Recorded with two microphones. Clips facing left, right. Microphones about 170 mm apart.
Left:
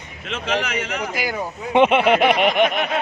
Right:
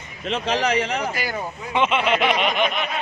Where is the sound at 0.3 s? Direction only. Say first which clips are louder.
Right 2 dB; 35° right (ahead or behind).